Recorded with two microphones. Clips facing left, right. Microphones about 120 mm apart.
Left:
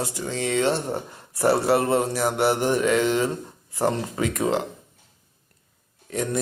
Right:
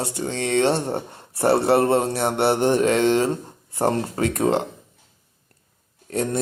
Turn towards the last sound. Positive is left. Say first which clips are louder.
# right 2 dB
turn(degrees=-30)  # may be behind; listen again after turning